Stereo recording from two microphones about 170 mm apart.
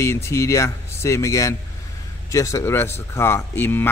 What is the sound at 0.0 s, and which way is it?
Speech, 15° left (ahead or behind).